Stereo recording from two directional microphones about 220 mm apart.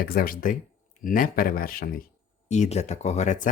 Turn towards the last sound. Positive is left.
turn(degrees=30)  # may be behind; listen again after turning